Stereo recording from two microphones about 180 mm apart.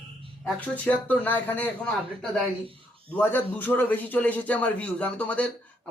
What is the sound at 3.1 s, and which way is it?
A man's voice, 10° left (ahead or behind).